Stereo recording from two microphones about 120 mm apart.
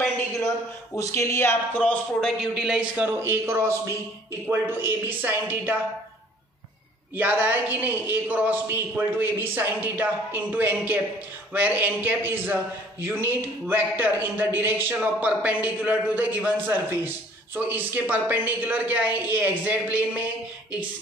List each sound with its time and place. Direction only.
0.9 s speech: 25° left (ahead or behind)
1.8 s speech: 5° left (ahead or behind); by 5.8 s 15° right (ahead or behind)
7.2 s speech: 15° right (ahead or behind)